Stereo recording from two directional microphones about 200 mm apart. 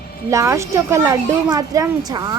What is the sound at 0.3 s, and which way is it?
Speech, 15° right (ahead or behind).